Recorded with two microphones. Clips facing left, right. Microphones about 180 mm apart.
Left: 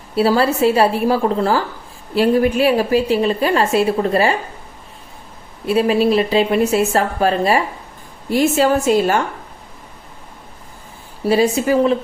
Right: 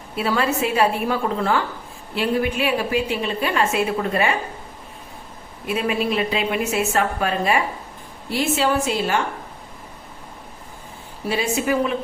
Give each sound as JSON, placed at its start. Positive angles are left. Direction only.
{"t": 0.2, "sound": "a woman's voice", "side_deg": 35}
{"t": 5.6, "sound": "a woman's voice", "side_deg": 35}
{"t": 11.3, "sound": "a woman's voice", "side_deg": 35}